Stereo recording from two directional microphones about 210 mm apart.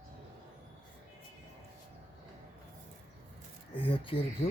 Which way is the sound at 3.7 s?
25° left (ahead or behind).